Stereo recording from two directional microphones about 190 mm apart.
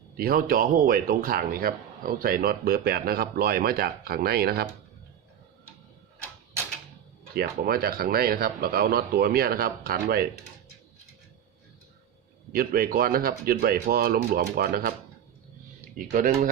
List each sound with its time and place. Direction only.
0.2 s speech: 50° right (ahead or behind)
7.3 s speech: 55° right (ahead or behind)
12.5 s speech: 50° right (ahead or behind)
16.0 s speech: 45° right (ahead or behind)